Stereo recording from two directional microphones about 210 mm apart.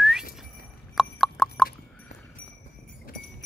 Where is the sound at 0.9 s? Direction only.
Centre (ahead or behind).